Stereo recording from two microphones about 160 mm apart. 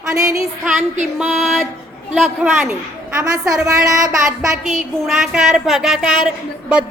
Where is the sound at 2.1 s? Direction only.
Centre (ahead or behind).